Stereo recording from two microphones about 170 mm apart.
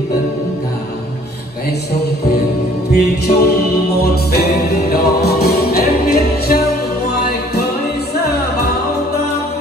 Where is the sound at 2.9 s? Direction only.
70° left (ahead or behind).